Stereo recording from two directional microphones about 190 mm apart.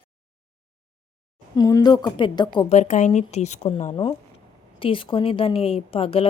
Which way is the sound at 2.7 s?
35° left (ahead or behind).